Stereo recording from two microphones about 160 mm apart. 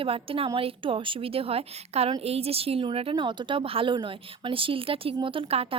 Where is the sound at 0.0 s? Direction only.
35° right (ahead or behind).